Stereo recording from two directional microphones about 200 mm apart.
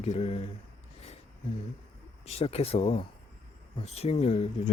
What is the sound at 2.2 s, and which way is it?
Speech, 30° left (ahead or behind).